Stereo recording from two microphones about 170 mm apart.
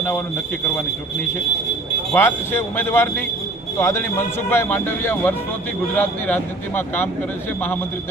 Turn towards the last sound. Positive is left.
turn(degrees=10)  # may be behind; listen again after turning